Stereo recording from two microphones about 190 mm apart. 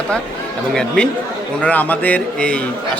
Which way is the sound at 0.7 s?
5° left (ahead or behind).